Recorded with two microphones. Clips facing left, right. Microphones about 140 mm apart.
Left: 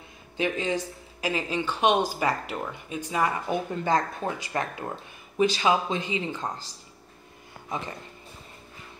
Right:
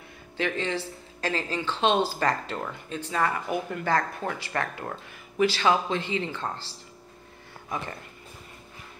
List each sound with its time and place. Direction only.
0.4 s speech: 15° left (ahead or behind)